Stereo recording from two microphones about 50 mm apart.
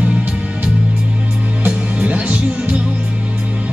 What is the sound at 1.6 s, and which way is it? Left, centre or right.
Music, right.